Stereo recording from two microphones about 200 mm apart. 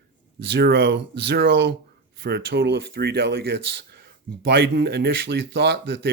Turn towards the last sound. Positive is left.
turn(degrees=-60)  # may be behind; listen again after turning